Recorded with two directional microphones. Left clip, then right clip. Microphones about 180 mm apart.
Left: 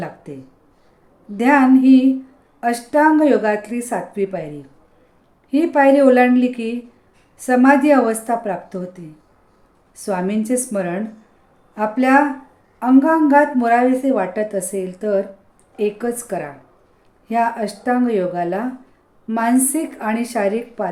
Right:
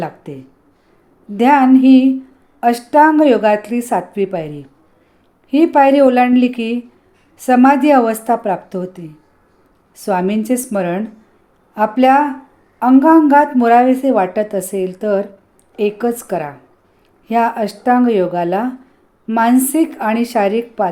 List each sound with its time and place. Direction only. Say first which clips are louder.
0.0 s speech: right 5 dB; 25° right (ahead or behind)
1.4 s a woman's voice: right 3 dB; 25° right (ahead or behind)
5.5 s a woman's voice: right 3 dB; 25° right (ahead or behind)